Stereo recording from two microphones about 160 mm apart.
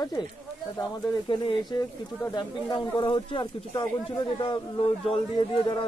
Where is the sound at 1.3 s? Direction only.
30° left (ahead or behind).